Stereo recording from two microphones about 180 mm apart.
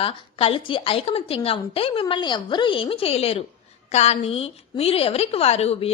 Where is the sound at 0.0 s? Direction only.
30° left (ahead or behind).